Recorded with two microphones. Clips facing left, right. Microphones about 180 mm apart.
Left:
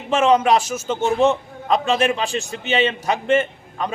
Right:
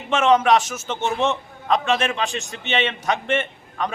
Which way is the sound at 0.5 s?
35° left (ahead or behind).